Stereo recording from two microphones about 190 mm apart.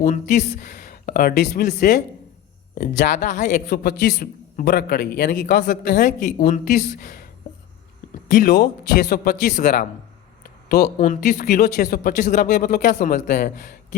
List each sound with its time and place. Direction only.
0.0 s a man's voice: 40° left (ahead or behind)
3.7 s a man's voice: 55° left (ahead or behind)
8.3 s a man's voice: 50° left (ahead or behind)
10.4 s a sound: 55° left (ahead or behind)
11.1 s a man's voice: 50° left (ahead or behind)